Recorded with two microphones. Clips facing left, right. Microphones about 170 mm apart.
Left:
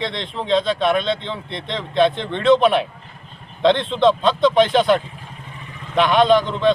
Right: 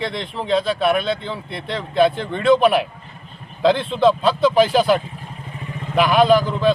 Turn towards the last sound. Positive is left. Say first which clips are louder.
# even
turn(degrees=-5)  # may be behind; listen again after turning